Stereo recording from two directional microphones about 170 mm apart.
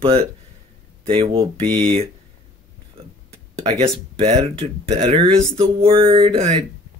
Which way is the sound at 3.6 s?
35° right (ahead or behind).